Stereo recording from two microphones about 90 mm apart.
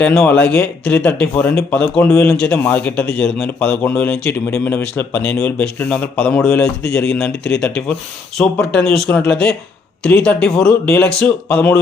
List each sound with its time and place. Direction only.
0.0 s speech: 5° left (ahead or behind)